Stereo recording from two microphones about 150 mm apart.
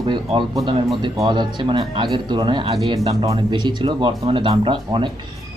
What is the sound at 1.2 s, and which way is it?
Speech, 30° right (ahead or behind).